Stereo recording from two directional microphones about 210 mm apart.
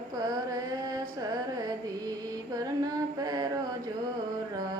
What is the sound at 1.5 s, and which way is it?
Carnatic music, 15° right (ahead or behind).